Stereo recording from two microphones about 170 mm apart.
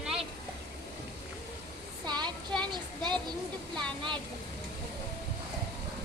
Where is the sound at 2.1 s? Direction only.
25° right (ahead or behind).